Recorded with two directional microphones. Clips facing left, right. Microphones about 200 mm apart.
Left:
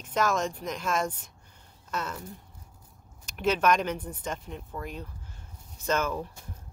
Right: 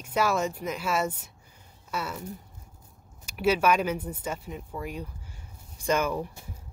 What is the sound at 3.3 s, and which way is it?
Speech, 10° right (ahead or behind).